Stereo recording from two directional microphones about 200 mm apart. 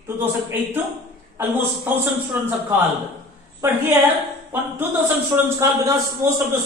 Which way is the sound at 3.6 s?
10° right (ahead or behind).